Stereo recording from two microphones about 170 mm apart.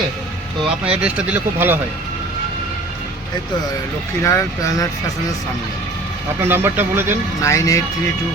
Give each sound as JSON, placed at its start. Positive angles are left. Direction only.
{"t": 0.9, "sound": "speech", "side_deg": -5}
{"t": 4.2, "sound": "speech", "side_deg": 15}
{"t": 6.4, "sound": "speech", "side_deg": -15}
{"t": 7.4, "sound": "speech", "side_deg": 20}